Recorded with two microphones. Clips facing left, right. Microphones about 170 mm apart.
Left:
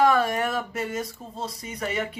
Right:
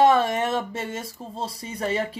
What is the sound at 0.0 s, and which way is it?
Speech, 25° right (ahead or behind).